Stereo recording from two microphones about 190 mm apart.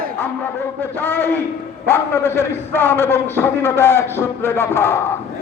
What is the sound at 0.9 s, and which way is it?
A man's voice, 10° left (ahead or behind).